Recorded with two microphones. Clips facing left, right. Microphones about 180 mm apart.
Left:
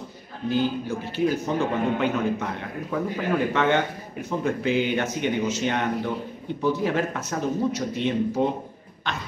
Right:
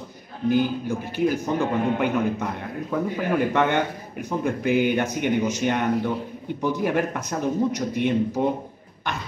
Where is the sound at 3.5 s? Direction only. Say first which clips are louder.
Even; 15° right (ahead or behind).